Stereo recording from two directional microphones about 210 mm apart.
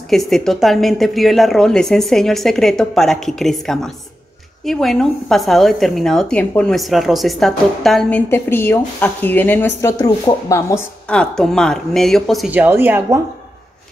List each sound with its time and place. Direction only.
0.1 s a woman's voice: centre (ahead or behind)
11.1 s a woman's voice: 5° left (ahead or behind)